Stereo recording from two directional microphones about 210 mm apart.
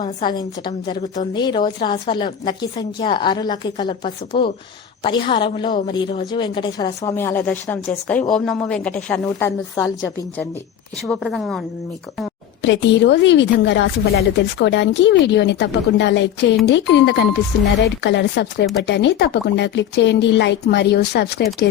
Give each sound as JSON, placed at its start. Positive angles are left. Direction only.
{"t": 0.0, "sound": "a woman's voice", "side_deg": 20}
{"t": 11.0, "sound": "a woman's voice", "side_deg": 0}
{"t": 12.6, "sound": "a woman's voice", "side_deg": 60}